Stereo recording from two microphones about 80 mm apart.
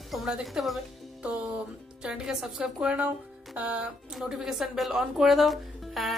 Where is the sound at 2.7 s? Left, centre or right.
Centre.